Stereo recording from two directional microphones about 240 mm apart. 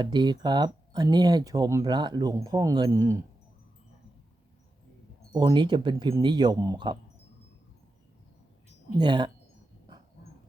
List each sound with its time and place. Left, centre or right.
0.0 s speech: centre
5.3 s speech: centre
9.0 s speech: centre